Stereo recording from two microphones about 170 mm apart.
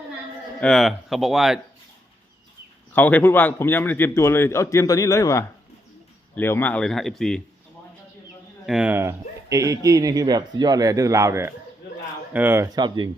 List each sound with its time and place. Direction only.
0.6 s speech: centre (ahead or behind)
2.9 s a man's voice: 10° left (ahead or behind)
8.6 s speech: 5° right (ahead or behind); by 13.1 s 25° right (ahead or behind)